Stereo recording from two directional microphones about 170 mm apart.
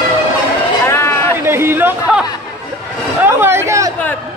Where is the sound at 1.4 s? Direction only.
15° right (ahead or behind).